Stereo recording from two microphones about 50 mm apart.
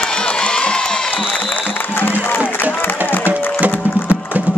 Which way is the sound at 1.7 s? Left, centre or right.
Left.